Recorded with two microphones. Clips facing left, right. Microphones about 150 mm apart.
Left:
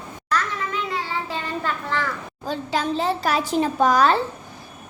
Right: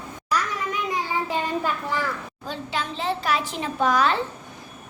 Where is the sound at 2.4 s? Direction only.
40° left (ahead or behind).